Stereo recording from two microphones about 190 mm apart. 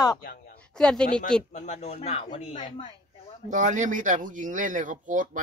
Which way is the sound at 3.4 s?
40° right (ahead or behind).